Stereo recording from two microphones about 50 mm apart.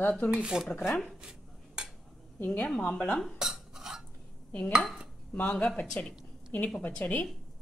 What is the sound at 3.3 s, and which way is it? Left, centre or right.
Cutlery, centre.